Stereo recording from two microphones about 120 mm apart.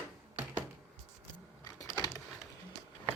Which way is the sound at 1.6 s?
30° left (ahead or behind).